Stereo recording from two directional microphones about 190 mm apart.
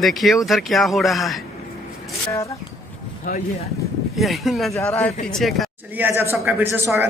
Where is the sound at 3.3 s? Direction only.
45° left (ahead or behind).